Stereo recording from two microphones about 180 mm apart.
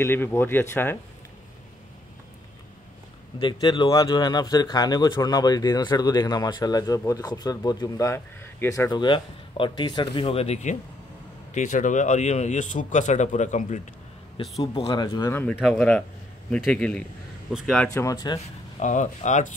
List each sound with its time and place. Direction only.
0.0 s speech: 15° left (ahead or behind)
3.3 s a man's voice: 25° left (ahead or behind); by 13.7 s 40° left (ahead or behind)
14.6 s speech: 30° left (ahead or behind)
15.3 s speech: 10° left (ahead or behind)
18.0 s speech: 20° left (ahead or behind)
18.8 s a man's voice: 40° left (ahead or behind)